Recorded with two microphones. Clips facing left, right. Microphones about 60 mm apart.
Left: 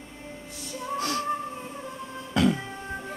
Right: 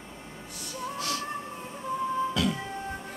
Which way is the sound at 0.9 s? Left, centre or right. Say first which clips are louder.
Left 6 dB; left.